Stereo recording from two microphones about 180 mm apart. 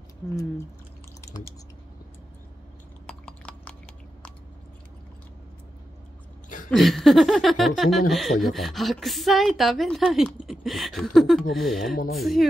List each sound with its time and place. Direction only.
3.3 s chewing: 5° left (ahead or behind)
6.7 s a woman's voice: centre (ahead or behind)